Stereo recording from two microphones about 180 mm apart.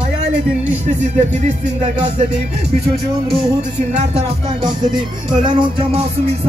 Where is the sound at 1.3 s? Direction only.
40° right (ahead or behind).